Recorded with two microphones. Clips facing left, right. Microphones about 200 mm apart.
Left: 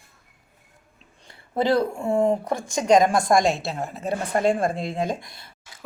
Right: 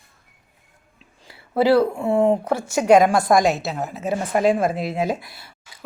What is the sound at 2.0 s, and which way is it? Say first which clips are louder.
Speech: right 3 dB; 35° right (ahead or behind).